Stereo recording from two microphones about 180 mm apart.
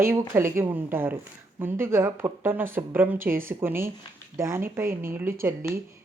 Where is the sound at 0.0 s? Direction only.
15° right (ahead or behind).